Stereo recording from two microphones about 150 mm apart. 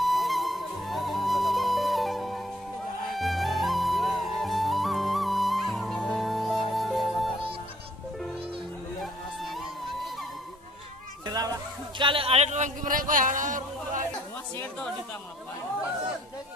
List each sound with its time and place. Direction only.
0.0 s music: centre (ahead or behind)
9.0 s music: centre (ahead or behind)
11.2 s a sound: 25° right (ahead or behind)
12.0 s speech: 35° right (ahead or behind); by 14.0 s 60° right (ahead or behind)